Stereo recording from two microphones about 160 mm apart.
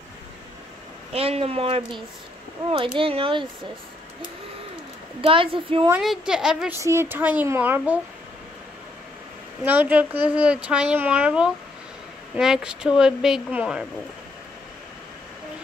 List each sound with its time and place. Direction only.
1.1 s speech: 40° right (ahead or behind)
5.2 s speech: 35° right (ahead or behind)
5.9 s a woman's voice: 5° right (ahead or behind)
6.8 s a child's voice: 15° right (ahead or behind)
9.7 s a child's voice: 10° right (ahead or behind)